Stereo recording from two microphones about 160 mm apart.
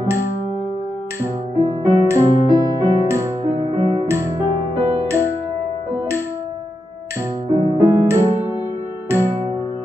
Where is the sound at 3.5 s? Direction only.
40° right (ahead or behind).